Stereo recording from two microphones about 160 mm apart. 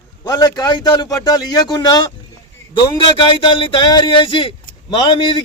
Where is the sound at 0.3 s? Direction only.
25° left (ahead or behind).